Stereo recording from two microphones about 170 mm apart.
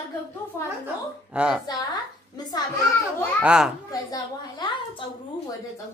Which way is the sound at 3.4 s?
5° right (ahead or behind).